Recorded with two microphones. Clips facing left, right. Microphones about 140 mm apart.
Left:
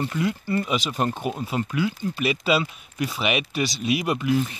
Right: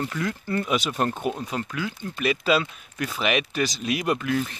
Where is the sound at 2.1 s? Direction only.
10° left (ahead or behind).